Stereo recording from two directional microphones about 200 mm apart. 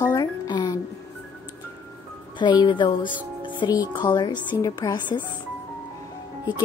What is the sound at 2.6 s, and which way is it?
Speech, 20° left (ahead or behind).